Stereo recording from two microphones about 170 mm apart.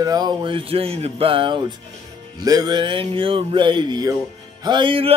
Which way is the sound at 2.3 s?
25° right (ahead or behind).